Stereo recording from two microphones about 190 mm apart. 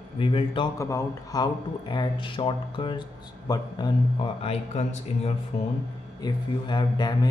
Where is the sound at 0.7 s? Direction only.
15° left (ahead or behind).